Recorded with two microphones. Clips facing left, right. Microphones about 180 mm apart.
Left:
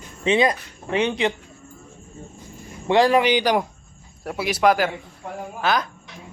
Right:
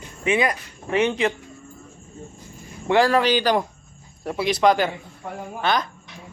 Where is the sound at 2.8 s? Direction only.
20° left (ahead or behind).